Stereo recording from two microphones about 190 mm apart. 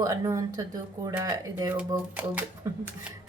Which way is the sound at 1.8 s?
10° right (ahead or behind).